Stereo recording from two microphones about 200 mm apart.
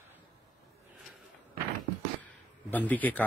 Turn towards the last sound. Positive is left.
turn(degrees=10)  # may be behind; listen again after turning